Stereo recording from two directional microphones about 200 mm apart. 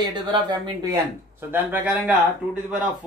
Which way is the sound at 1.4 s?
10° right (ahead or behind).